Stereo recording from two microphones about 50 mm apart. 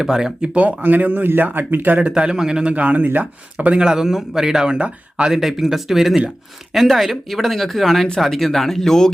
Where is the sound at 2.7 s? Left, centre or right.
Right.